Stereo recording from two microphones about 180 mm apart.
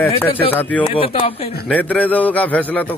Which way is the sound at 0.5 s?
10° left (ahead or behind).